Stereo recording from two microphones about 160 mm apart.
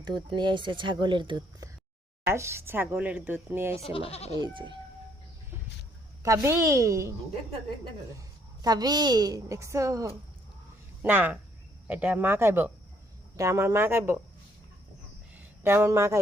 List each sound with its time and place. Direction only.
0.3 s a woman's voice: 30° right (ahead or behind)
2.2 s speech: 15° right (ahead or behind)
3.8 s speech: 35° left (ahead or behind)
4.4 s a woman's voice: 30° right (ahead or behind)
6.2 s a woman's voice: 20° right (ahead or behind)
8.6 s a woman's voice: 25° right (ahead or behind)
15.6 s speech: 15° right (ahead or behind)